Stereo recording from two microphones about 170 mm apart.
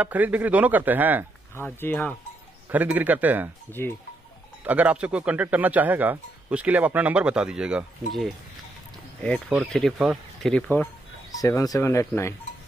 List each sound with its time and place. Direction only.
0.0 s speech: 10° right (ahead or behind)
1.5 s speech: 10° left (ahead or behind)
2.7 s speech: 10° right (ahead or behind)
4.6 s speech: 10° right (ahead or behind)
9.7 s speech: centre (ahead or behind)
11.3 s speech: 20° left (ahead or behind)